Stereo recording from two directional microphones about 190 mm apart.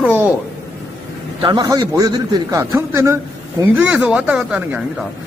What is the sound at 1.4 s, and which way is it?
A man's voice, 25° right (ahead or behind).